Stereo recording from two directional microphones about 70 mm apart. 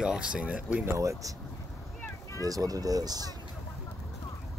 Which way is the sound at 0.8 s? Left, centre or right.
Right.